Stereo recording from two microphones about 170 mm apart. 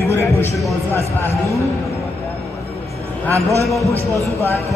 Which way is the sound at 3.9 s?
15° right (ahead or behind).